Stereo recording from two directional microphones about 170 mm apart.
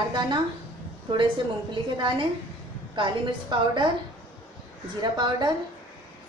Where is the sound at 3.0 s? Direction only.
30° right (ahead or behind).